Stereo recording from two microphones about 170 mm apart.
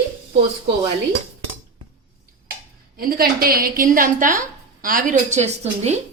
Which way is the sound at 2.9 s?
60° right (ahead or behind).